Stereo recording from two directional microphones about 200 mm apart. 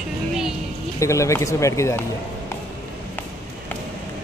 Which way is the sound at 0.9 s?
15° left (ahead or behind).